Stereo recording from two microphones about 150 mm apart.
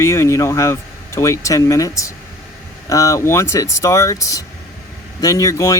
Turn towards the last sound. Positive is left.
turn(degrees=20)  # may be behind; listen again after turning